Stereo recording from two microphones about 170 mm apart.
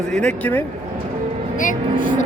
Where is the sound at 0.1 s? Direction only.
5° left (ahead or behind).